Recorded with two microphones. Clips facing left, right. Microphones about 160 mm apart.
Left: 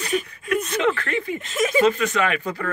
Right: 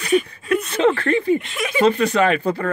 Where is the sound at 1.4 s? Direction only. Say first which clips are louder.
Left 4 dB; 40° left (ahead or behind).